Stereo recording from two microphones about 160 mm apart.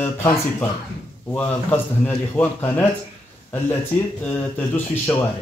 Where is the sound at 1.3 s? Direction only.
10° left (ahead or behind).